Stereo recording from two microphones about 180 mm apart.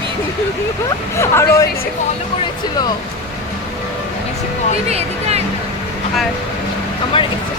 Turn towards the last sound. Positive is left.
turn(degrees=25)  # may be behind; listen again after turning